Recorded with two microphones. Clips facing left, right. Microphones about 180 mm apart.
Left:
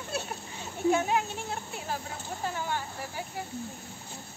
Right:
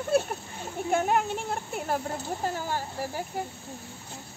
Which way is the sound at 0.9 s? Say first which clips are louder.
Right 3 dB; 55° right (ahead or behind).